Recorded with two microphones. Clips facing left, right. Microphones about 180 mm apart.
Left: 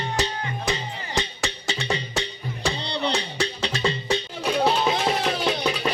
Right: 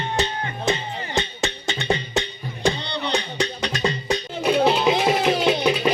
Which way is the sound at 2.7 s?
30° left (ahead or behind).